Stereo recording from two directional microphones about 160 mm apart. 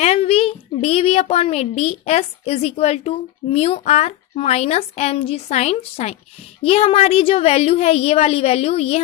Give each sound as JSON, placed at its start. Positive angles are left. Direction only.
{"t": 0.0, "sound": "a child's voice", "side_deg": 40}